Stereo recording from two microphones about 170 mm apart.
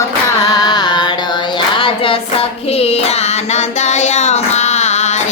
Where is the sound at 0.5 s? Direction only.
25° left (ahead or behind); by 5.2 s 40° left (ahead or behind).